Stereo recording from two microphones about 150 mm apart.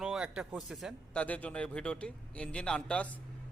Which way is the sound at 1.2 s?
10° left (ahead or behind).